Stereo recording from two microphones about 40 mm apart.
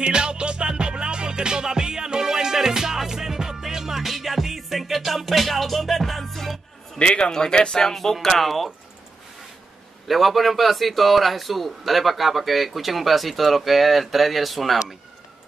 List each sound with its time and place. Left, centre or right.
0.0 s music: right; by 6.6 s centre
7.0 s speech: left
7.8 s a man's voice: centre
10.0 s a man's voice: centre